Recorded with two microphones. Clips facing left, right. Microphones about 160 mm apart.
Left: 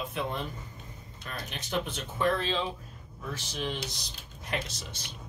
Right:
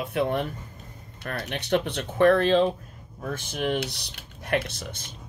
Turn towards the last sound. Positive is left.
turn(degrees=-55)  # may be behind; listen again after turning